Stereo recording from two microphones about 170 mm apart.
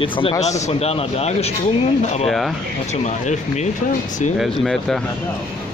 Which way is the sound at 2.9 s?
40° left (ahead or behind).